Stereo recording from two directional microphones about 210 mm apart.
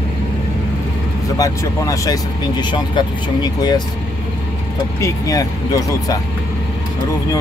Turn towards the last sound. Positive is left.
turn(degrees=15)  # may be behind; listen again after turning